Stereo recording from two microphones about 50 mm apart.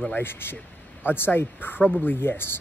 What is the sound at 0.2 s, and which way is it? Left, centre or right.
Speech, left.